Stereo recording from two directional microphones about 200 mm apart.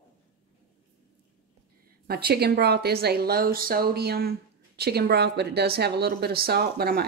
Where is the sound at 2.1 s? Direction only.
50° right (ahead or behind).